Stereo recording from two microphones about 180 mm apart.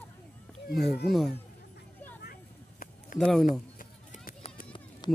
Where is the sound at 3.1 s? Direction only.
Centre (ahead or behind).